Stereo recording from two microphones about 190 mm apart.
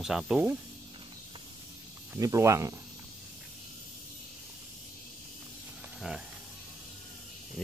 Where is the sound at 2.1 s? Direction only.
15° right (ahead or behind).